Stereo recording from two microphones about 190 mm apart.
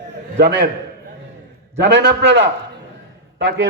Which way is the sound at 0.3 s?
60° right (ahead or behind).